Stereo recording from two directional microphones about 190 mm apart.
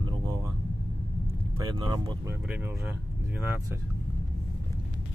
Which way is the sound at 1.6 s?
25° right (ahead or behind).